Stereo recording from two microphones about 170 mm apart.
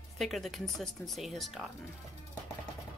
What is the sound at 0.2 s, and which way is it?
Speech, centre (ahead or behind).